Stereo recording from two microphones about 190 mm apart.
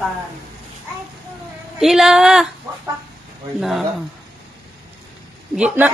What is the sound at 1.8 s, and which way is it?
Speech, centre (ahead or behind).